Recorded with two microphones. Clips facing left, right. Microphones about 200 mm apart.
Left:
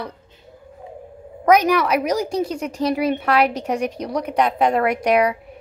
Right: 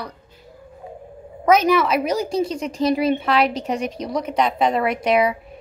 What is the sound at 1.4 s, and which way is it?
A woman's voice, 10° left (ahead or behind).